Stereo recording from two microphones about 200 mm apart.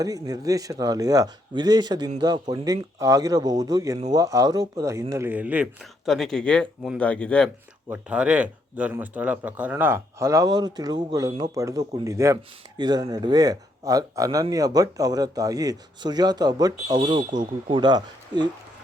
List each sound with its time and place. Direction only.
0.0 s speech: 15° right (ahead or behind); by 7.5 s 5° left (ahead or behind)
7.9 s speech: 5° right (ahead or behind); by 18.4 s 20° right (ahead or behind)